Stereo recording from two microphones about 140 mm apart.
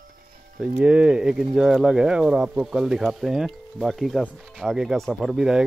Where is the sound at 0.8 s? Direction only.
10° right (ahead or behind).